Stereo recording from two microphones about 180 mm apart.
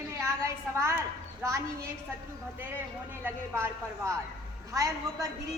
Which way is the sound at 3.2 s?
15° right (ahead or behind).